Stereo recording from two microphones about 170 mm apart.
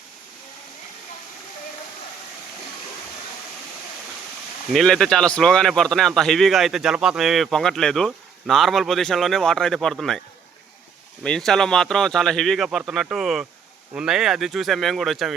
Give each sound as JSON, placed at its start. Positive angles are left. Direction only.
{"t": 4.7, "sound": "a man's voice", "side_deg": 0}
{"t": 11.2, "sound": "a man's voice", "side_deg": 5}